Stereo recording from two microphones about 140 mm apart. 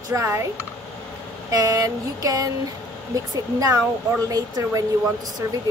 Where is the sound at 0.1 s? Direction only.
20° right (ahead or behind).